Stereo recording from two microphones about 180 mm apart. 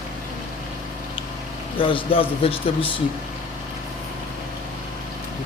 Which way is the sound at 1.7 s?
30° left (ahead or behind).